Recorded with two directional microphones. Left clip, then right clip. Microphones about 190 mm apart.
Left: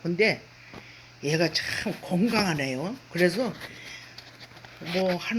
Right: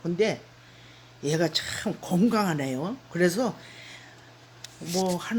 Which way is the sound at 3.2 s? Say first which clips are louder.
Right 1 dB; 25° right (ahead or behind).